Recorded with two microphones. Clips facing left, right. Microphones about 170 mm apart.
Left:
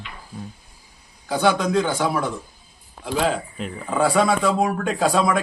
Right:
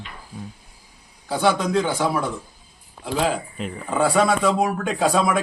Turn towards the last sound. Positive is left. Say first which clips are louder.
# even
turn(degrees=0)  # may be behind; listen again after turning